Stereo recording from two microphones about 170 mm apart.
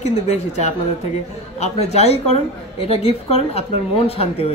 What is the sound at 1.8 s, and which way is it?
A woman's voice, 40° left (ahead or behind).